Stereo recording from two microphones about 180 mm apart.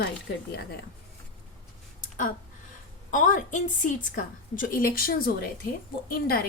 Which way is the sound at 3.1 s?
45° left (ahead or behind).